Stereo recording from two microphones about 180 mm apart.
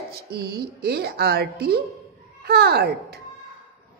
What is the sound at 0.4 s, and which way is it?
A woman's voice, 65° right (ahead or behind).